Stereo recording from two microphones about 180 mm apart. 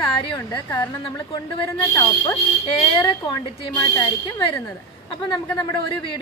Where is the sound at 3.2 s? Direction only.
25° left (ahead or behind).